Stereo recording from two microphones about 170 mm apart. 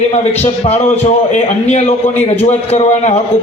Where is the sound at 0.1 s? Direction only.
40° left (ahead or behind).